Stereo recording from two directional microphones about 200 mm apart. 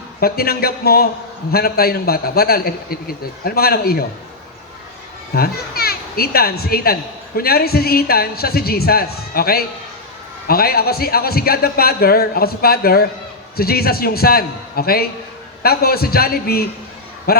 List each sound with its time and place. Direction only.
0.2 s speech: 50° left (ahead or behind)
5.3 s speech: 50° left (ahead or behind)